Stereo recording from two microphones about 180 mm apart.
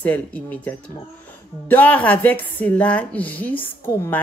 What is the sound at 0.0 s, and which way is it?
A woman's voice, 10° left (ahead or behind).